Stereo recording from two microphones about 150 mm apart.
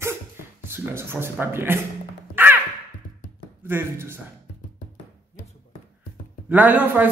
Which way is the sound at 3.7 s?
15° right (ahead or behind).